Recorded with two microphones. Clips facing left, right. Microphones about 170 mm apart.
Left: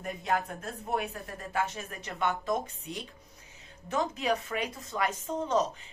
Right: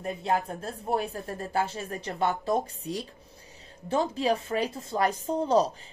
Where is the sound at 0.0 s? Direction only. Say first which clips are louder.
Right 3 dB; 30° right (ahead or behind).